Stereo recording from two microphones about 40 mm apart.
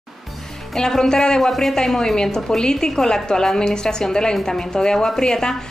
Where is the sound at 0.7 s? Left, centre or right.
Centre.